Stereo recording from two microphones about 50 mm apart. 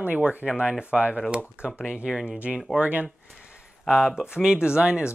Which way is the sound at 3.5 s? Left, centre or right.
Centre.